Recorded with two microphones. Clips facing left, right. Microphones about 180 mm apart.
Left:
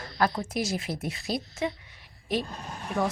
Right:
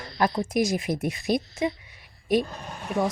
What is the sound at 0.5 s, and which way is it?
Speech, 15° right (ahead or behind).